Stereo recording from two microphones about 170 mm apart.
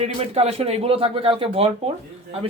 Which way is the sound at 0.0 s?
35° right (ahead or behind).